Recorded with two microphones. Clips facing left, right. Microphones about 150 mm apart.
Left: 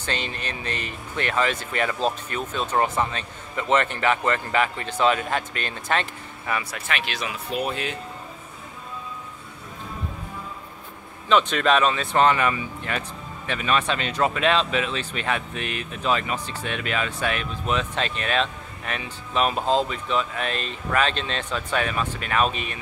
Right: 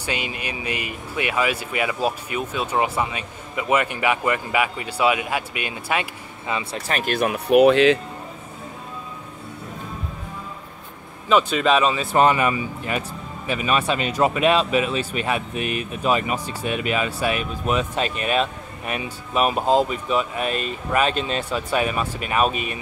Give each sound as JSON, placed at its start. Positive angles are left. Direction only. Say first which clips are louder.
{"t": 0.0, "sound": "speech", "louder": "right 2 dB", "side_deg": -10}
{"t": 6.9, "sound": "speech", "louder": "right 8 dB", "side_deg": -45}
{"t": 11.2, "sound": "speech", "louder": "right 2 dB", "side_deg": -5}